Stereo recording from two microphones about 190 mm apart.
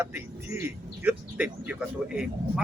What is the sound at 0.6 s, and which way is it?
A man's voice, 10° right (ahead or behind).